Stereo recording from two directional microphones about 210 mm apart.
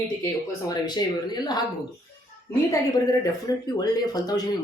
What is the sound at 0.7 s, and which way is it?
Speech, 20° left (ahead or behind).